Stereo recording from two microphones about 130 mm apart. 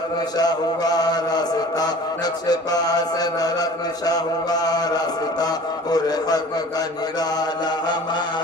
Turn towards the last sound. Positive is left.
turn(degrees=30)  # may be behind; listen again after turning